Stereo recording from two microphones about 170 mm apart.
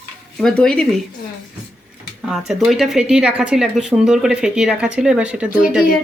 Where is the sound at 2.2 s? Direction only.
5° right (ahead or behind).